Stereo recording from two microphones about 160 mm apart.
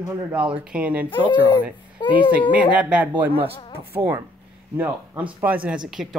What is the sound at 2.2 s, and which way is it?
Speech, 10° right (ahead or behind).